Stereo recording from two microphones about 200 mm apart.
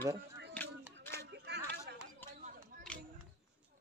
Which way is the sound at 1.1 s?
55° right (ahead or behind).